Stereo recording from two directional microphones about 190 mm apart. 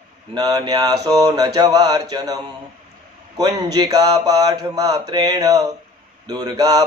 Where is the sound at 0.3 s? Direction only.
20° right (ahead or behind).